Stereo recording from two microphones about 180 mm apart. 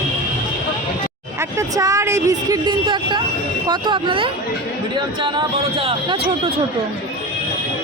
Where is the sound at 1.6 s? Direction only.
20° right (ahead or behind).